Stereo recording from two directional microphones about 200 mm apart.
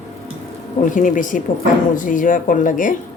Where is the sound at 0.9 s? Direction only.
40° left (ahead or behind).